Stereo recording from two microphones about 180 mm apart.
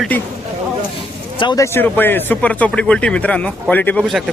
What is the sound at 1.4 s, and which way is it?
Speech, 20° left (ahead or behind).